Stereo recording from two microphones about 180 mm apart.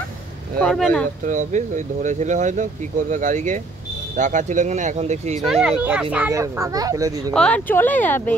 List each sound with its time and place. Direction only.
0.6 s speech: 5° left (ahead or behind)
1.2 s speech: 45° right (ahead or behind)
5.5 s a child's voice: 5° right (ahead or behind); by 7.1 s 20° right (ahead or behind)
7.2 s speech: 5° left (ahead or behind)